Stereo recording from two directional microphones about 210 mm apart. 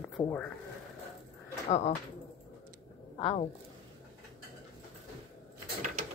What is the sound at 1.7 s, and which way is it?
Speech, 30° left (ahead or behind).